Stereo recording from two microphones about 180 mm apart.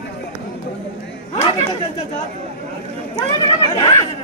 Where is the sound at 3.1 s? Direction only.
25° left (ahead or behind).